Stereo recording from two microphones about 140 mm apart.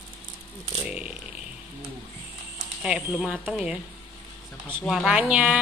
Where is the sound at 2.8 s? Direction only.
5° right (ahead or behind).